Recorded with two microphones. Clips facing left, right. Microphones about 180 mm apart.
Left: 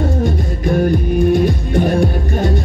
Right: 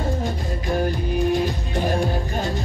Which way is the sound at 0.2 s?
55° left (ahead or behind).